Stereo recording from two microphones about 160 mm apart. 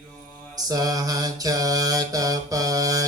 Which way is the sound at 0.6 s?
25° right (ahead or behind).